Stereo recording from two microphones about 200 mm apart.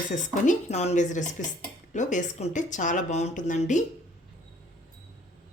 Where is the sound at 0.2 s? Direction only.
35° left (ahead or behind).